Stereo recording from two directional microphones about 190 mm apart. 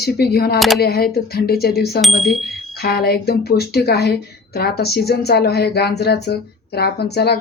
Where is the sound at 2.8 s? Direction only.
55° left (ahead or behind).